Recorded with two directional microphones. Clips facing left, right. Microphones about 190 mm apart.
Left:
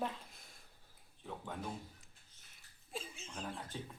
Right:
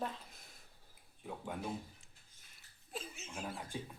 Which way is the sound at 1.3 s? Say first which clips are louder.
Right 2 dB; 10° right (ahead or behind).